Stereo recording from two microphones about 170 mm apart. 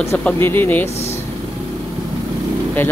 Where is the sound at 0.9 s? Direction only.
40° left (ahead or behind).